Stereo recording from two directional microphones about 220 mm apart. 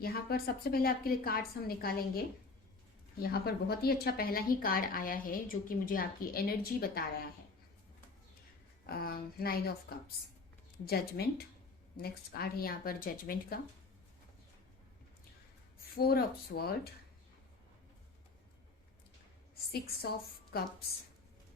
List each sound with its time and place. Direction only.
0.0 s speech: 45° left (ahead or behind)
8.9 s speech: 45° left (ahead or behind)
10.8 s speech: 45° left (ahead or behind)
16.0 s speech: 45° left (ahead or behind)
19.7 s speech: 45° left (ahead or behind)